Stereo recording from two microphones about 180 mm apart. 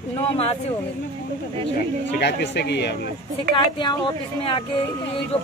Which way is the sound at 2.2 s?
70° left (ahead or behind).